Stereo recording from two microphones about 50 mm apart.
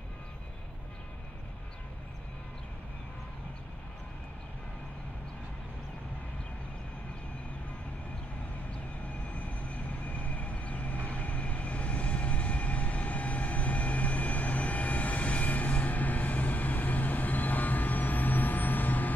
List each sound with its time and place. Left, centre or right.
9.3 s vehicle: left